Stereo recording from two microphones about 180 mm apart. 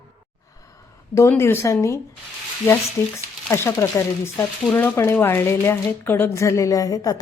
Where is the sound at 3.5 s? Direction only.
15° left (ahead or behind).